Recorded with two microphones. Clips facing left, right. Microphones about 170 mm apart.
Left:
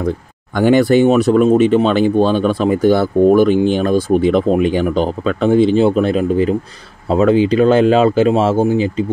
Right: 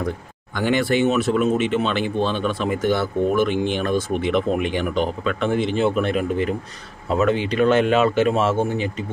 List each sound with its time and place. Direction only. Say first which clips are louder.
0.6 s speech: left 9 dB; 40° left (ahead or behind)